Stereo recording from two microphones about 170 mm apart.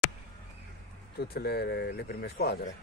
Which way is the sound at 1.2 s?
70° left (ahead or behind).